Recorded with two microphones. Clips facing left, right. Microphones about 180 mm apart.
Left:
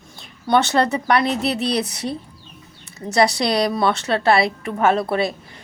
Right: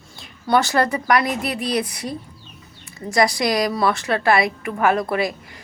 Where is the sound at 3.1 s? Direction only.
30° left (ahead or behind).